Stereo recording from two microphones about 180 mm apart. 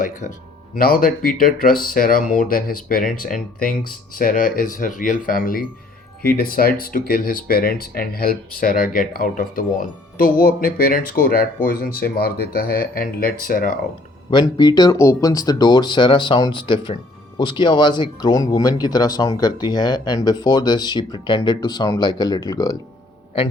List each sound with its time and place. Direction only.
0.0 s speech: 45° left (ahead or behind)
14.3 s speech: 25° left (ahead or behind)